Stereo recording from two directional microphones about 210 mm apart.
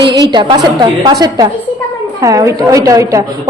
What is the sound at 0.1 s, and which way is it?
A woman's voice, 20° right (ahead or behind).